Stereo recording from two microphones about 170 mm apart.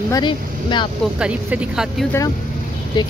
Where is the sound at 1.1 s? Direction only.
5° right (ahead or behind).